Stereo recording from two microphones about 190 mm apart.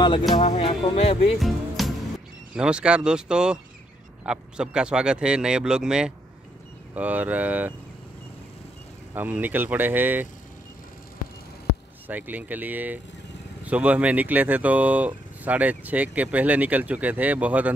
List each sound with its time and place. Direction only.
0.4 s music: 30° left (ahead or behind)
1.4 s music: centre (ahead or behind)
2.5 s speech: 5° right (ahead or behind)
9.1 s speech: 10° right (ahead or behind)
12.1 s speech: 10° right (ahead or behind)